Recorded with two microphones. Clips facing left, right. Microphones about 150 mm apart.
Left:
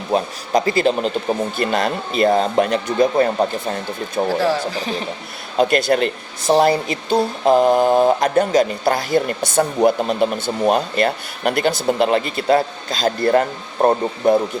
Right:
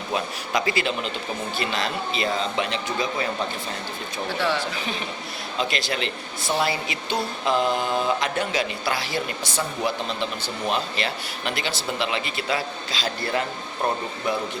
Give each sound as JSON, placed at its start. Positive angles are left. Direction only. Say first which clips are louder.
{"t": 0.1, "sound": "speech", "louder": "left 8 dB", "side_deg": 40}
{"t": 4.2, "sound": "speech", "louder": "left 7 dB", "side_deg": 40}
{"t": 5.5, "sound": "speech", "louder": "left 11 dB", "side_deg": 50}
{"t": 6.5, "sound": "speech", "louder": "left 10 dB", "side_deg": 40}